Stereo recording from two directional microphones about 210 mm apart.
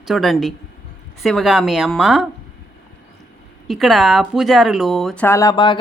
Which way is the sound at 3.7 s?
Centre (ahead or behind).